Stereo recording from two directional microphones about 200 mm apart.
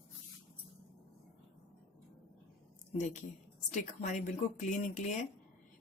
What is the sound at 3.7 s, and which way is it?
Speech, 35° left (ahead or behind).